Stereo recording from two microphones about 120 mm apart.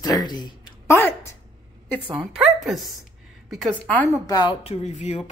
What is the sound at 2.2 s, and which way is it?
Speech, centre (ahead or behind).